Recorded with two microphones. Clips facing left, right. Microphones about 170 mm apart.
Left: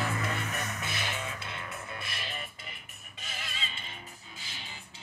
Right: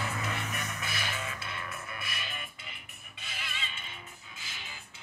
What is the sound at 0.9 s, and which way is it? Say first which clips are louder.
Music: left 1 dB; 25° left (ahead or behind).